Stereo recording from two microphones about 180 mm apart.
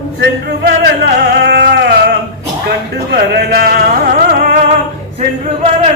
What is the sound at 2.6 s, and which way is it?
Speech, 60° right (ahead or behind).